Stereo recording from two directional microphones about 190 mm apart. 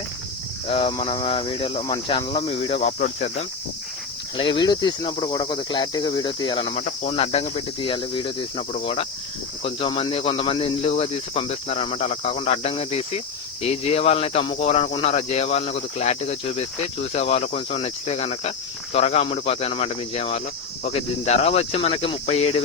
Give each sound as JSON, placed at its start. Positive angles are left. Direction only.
{"t": 0.7, "sound": "speech", "side_deg": 30}
{"t": 4.4, "sound": "speech", "side_deg": 25}